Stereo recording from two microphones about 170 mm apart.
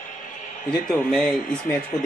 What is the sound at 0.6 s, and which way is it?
Speech, 5° left (ahead or behind).